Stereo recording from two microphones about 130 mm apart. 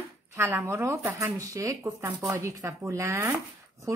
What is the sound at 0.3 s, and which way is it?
Speech, 20° right (ahead or behind).